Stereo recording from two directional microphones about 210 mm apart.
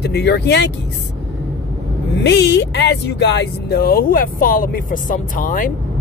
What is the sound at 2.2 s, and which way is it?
Speech, 55° left (ahead or behind).